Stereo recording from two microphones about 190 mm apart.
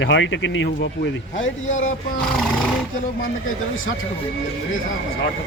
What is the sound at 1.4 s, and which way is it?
Speech, 85° left.